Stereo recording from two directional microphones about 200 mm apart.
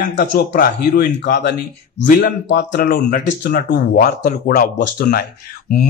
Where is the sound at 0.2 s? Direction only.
45° left (ahead or behind).